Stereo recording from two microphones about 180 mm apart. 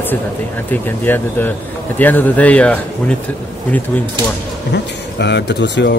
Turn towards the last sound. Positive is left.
turn(degrees=70)  # may be behind; listen again after turning